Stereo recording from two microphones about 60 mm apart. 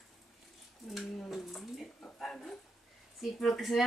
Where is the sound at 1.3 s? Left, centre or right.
Centre.